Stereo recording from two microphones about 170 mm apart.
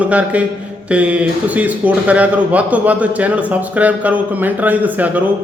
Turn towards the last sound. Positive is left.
turn(degrees=-10)  # may be behind; listen again after turning